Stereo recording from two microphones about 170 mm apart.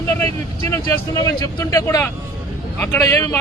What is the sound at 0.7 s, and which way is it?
A man's voice, 20° left (ahead or behind).